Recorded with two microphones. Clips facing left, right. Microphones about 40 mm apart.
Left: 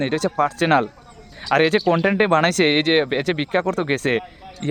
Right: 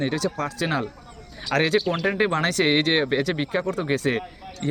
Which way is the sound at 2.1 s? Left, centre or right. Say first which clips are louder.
Left 5 dB; left.